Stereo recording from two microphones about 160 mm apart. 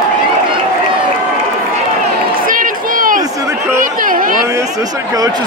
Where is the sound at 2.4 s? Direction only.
60° right (ahead or behind).